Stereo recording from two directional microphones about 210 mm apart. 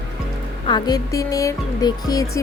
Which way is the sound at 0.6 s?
20° left (ahead or behind).